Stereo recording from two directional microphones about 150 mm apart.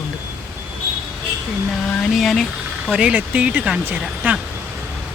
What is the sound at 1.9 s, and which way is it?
Speech, centre (ahead or behind).